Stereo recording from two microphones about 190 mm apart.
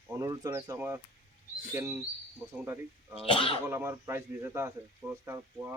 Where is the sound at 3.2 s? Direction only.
30° left (ahead or behind).